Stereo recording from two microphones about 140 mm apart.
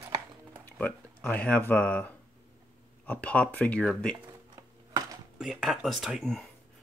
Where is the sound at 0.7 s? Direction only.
15° left (ahead or behind).